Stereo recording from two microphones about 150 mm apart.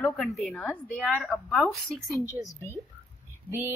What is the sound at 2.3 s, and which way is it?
Speech, 20° left (ahead or behind).